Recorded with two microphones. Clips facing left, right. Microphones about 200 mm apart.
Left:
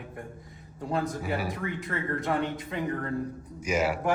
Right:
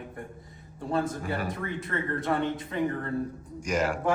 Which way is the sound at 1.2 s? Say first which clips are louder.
Left 1 dB; 10° left (ahead or behind).